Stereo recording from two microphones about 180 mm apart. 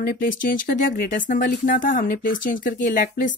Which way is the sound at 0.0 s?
55° left (ahead or behind).